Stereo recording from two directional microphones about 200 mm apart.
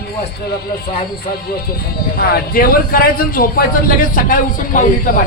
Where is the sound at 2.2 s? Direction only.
45° left (ahead or behind).